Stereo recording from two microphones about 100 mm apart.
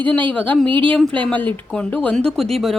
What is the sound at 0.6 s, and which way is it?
Speech, 55° right (ahead or behind).